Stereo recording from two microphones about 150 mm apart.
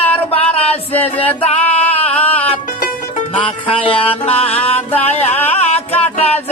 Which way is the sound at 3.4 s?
35° left (ahead or behind).